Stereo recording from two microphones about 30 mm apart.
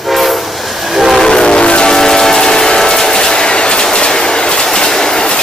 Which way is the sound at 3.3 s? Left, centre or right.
Left.